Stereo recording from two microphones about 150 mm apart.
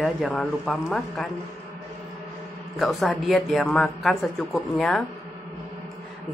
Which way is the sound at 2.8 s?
Centre (ahead or behind).